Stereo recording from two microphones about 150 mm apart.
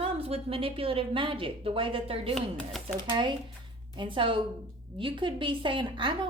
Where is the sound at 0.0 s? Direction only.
40° right (ahead or behind).